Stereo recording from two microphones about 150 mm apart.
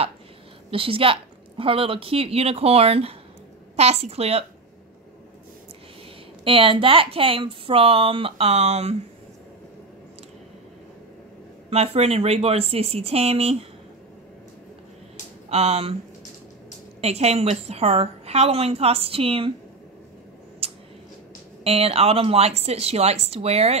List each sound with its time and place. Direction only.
0.7 s a woman's voice: 35° right (ahead or behind)
6.4 s a woman's voice: 35° right (ahead or behind)
11.7 s a woman's voice: 45° right (ahead or behind)
15.5 s a woman's voice: 45° right (ahead or behind)
17.0 s a woman's voice: 45° right (ahead or behind)
20.6 s a sound: 40° right (ahead or behind)
21.6 s a woman's voice: 40° right (ahead or behind)